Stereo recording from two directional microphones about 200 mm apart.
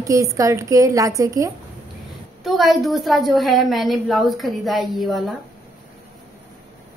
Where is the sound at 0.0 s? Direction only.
15° right (ahead or behind).